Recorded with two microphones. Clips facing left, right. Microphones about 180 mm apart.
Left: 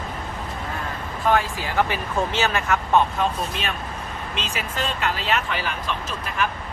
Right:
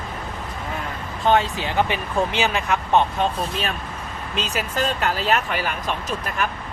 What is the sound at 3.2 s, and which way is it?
Speech, 35° right (ahead or behind).